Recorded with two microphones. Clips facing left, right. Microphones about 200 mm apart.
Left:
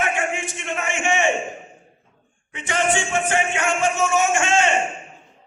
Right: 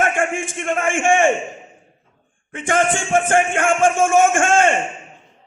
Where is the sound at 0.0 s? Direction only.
50° right (ahead or behind).